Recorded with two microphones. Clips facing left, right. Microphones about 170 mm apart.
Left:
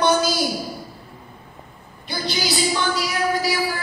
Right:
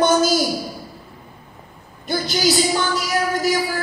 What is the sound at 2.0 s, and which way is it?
Speech, 45° right (ahead or behind).